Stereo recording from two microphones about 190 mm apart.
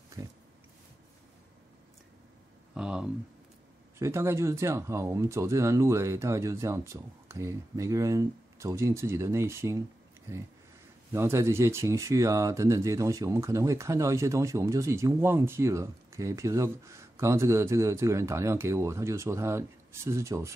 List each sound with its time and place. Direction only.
0.2 s pig: 20° right (ahead or behind)
2.7 s a sound: 5° right (ahead or behind)
4.0 s speech: 15° right (ahead or behind)
11.1 s speech: 15° right (ahead or behind)